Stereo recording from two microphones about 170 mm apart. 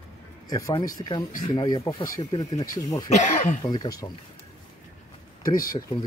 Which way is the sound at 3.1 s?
45° left (ahead or behind).